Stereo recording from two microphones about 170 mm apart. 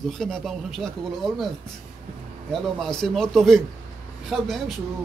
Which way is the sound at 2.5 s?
5° left (ahead or behind).